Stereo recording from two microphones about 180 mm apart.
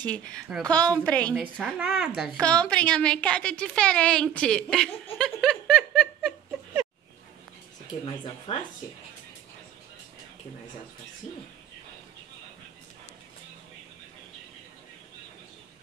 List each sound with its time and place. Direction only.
0.0 s a woman's voice: 5° left (ahead or behind)
1.3 s a woman's voice: 5° right (ahead or behind)
2.2 s a woman's voice: 5° left (ahead or behind)
5.1 s a sound: centre (ahead or behind)
8.0 s speech: 30° left (ahead or behind)